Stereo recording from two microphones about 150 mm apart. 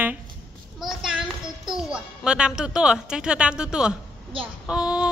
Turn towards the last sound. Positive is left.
turn(degrees=-5)  # may be behind; listen again after turning